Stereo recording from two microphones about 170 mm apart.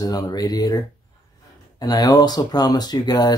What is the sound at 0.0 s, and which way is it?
Speech, 20° left (ahead or behind).